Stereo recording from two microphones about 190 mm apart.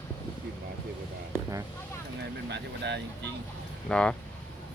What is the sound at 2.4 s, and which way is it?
Speech, 65° right (ahead or behind).